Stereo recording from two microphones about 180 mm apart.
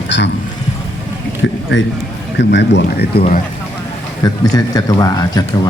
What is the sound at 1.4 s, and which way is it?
Speech, 90° left.